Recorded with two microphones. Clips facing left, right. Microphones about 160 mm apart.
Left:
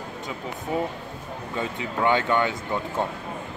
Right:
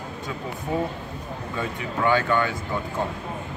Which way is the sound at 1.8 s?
20° left (ahead or behind).